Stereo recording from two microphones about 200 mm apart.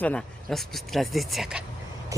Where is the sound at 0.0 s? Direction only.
5° left (ahead or behind).